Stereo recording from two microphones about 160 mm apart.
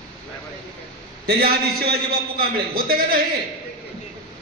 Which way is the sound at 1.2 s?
75° right (ahead or behind).